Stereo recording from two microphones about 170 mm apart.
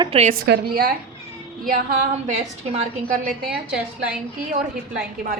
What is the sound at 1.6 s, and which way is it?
A woman's voice, 50° right (ahead or behind).